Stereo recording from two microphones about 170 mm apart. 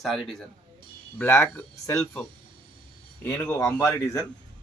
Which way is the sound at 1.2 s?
15° left (ahead or behind).